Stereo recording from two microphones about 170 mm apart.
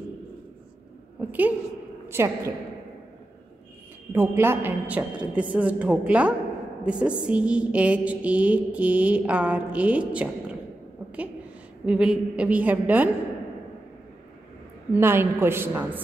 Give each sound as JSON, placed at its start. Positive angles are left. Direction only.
{"t": 1.2, "sound": "a sound", "side_deg": -10}
{"t": 2.0, "sound": "a woman's voice", "side_deg": -15}
{"t": 4.1, "sound": "a woman's voice", "side_deg": -15}
{"t": 11.8, "sound": "a woman's voice", "side_deg": -5}
{"t": 15.0, "sound": "a woman's voice", "side_deg": -15}